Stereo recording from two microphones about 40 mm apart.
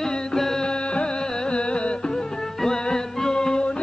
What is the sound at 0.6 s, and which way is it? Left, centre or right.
Music, left.